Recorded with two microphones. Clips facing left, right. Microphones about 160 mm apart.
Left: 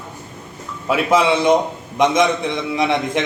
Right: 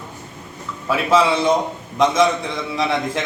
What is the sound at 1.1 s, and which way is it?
A man's voice, 20° left (ahead or behind).